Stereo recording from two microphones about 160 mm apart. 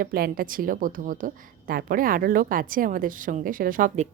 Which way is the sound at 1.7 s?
65° right (ahead or behind).